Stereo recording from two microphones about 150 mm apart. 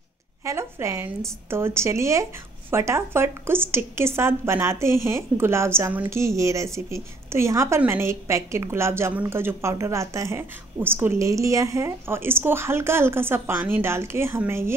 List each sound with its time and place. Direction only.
0.5 s a woman's voice: 20° right (ahead or behind)